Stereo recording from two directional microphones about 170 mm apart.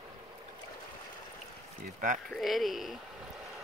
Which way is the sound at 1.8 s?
50° right (ahead or behind).